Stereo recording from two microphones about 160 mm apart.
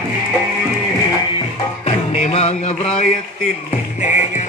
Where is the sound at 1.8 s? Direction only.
40° left (ahead or behind).